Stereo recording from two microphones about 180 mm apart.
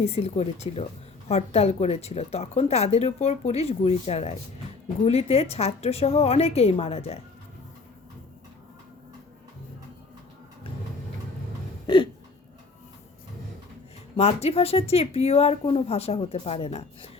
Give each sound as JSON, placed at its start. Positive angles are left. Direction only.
{"t": 0.0, "sound": "a woman's voice", "side_deg": 35}
{"t": 14.2, "sound": "a woman's voice", "side_deg": 35}